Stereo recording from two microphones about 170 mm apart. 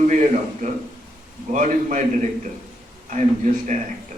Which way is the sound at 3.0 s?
45° right (ahead or behind).